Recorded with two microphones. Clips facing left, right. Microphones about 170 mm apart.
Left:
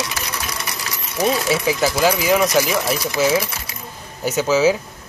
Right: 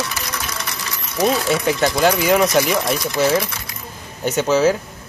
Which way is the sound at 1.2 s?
Centre (ahead or behind).